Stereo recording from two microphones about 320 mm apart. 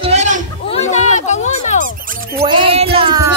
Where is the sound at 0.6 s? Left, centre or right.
Centre.